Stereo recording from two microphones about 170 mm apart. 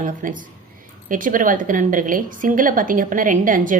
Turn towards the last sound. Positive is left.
turn(degrees=-50)  # may be behind; listen again after turning